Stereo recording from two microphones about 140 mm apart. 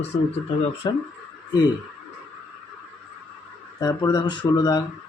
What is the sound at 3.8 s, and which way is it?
Speech, 25° left (ahead or behind).